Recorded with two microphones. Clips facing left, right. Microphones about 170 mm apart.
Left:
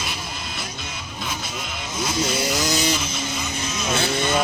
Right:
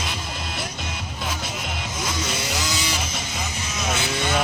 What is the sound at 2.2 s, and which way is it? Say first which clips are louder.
Vehicle: left 8 dB; 40° left (ahead or behind).